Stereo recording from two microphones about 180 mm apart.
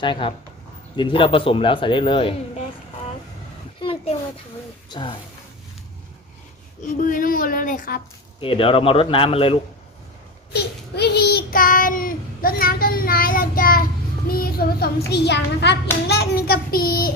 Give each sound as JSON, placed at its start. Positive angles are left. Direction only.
{"t": 0.0, "sound": "speech", "side_deg": 25}
{"t": 3.8, "sound": "a sound", "side_deg": 30}
{"t": 4.9, "sound": "speech", "side_deg": 25}
{"t": 7.0, "sound": "a child's voice", "side_deg": 50}
{"t": 8.4, "sound": "speech", "side_deg": 30}
{"t": 10.5, "sound": "child singing", "side_deg": 65}
{"t": 14.3, "sound": "hands", "side_deg": 55}